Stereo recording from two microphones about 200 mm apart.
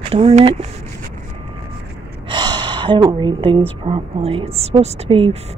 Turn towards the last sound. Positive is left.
turn(degrees=-25)  # may be behind; listen again after turning